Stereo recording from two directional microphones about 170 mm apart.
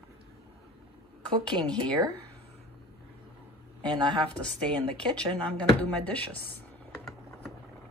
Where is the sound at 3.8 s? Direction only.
25° right (ahead or behind).